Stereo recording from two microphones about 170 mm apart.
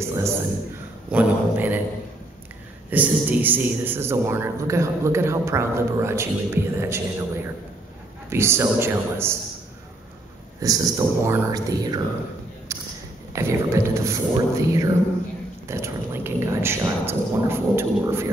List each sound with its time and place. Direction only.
0.0 s a sound: 15° right (ahead or behind)
1.1 s speech: 10° right (ahead or behind)
2.9 s speech: 10° right (ahead or behind)
8.3 s speech: 15° right (ahead or behind)
10.6 s speech: 20° right (ahead or behind)
12.7 s a sound: 20° right (ahead or behind)
13.3 s speech: 15° right (ahead or behind)